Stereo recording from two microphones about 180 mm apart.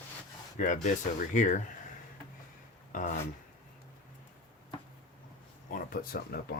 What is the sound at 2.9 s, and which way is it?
Speech, 45° left (ahead or behind).